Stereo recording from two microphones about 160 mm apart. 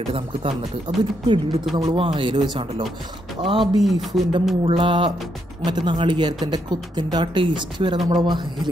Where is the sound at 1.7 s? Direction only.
35° right (ahead or behind).